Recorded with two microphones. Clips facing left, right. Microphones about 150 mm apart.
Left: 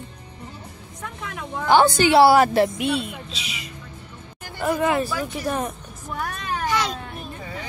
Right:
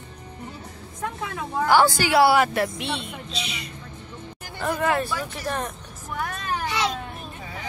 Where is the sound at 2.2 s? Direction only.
40° left (ahead or behind).